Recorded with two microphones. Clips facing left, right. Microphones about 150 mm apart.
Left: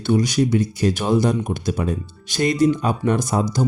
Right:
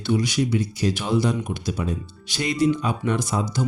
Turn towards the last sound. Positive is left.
turn(degrees=45)  # may be behind; listen again after turning